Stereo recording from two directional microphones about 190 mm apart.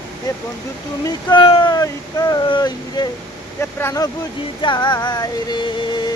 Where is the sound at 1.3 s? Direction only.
25° left (ahead or behind).